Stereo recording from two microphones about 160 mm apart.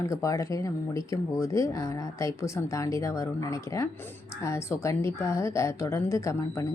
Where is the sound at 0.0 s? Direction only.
20° left (ahead or behind).